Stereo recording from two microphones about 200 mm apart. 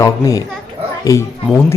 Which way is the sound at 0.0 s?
15° left (ahead or behind).